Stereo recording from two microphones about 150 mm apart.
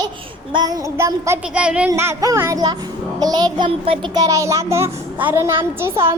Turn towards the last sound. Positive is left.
turn(degrees=-15)  # may be behind; listen again after turning